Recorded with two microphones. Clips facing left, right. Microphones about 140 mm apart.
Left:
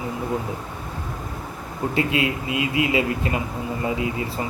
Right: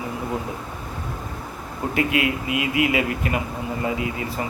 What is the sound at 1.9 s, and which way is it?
Speech, 25° left (ahead or behind).